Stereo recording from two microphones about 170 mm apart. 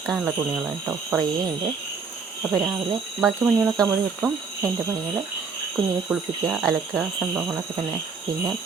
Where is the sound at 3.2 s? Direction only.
Centre (ahead or behind).